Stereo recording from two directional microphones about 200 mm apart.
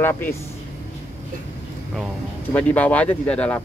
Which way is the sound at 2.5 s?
10° left (ahead or behind).